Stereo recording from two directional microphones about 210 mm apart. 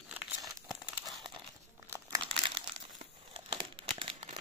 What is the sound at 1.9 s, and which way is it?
Crumpling, 20° right (ahead or behind).